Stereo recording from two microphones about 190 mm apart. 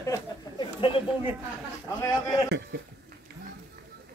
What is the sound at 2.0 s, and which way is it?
Speech, 20° left (ahead or behind).